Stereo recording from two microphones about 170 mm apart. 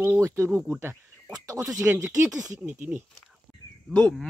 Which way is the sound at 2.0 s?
20° right (ahead or behind).